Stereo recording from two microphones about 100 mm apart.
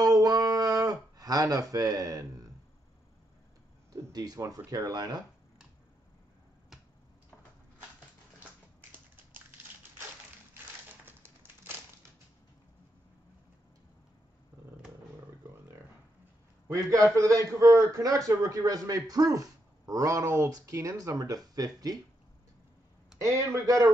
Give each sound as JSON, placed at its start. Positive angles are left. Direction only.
{"t": 0.0, "sound": "a sound", "side_deg": -40}
{"t": 3.9, "sound": "a man's voice", "side_deg": -40}
{"t": 10.5, "sound": "typewriter", "side_deg": -20}
{"t": 16.6, "sound": "a man's voice", "side_deg": -30}
{"t": 23.1, "sound": "a man's voice", "side_deg": -30}